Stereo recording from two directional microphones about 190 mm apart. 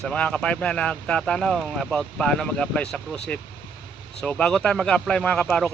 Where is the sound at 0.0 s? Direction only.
5° left (ahead or behind).